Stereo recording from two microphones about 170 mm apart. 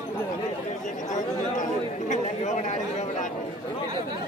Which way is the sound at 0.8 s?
45° left (ahead or behind).